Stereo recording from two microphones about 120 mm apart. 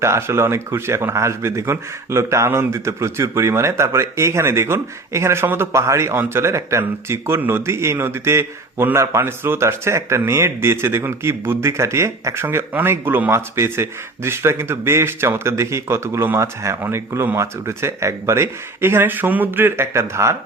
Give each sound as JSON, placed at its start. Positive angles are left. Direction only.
{"t": 0.0, "sound": "speech", "side_deg": -25}